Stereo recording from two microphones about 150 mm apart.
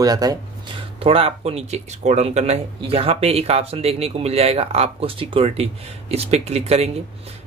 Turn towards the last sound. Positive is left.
turn(degrees=-45)  # may be behind; listen again after turning